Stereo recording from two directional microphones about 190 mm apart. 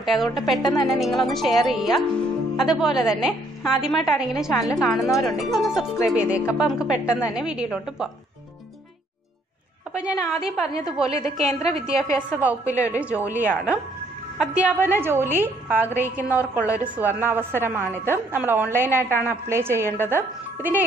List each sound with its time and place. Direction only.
0.0 s a woman's voice: centre (ahead or behind)
0.6 s speech: 20° left (ahead or behind)
0.8 s a woman's voice: centre (ahead or behind)
9.9 s a woman's voice: 5° right (ahead or behind)